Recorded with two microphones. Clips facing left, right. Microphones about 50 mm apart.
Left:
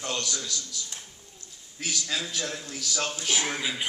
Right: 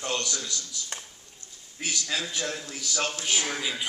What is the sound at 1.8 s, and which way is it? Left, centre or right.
Speech, centre.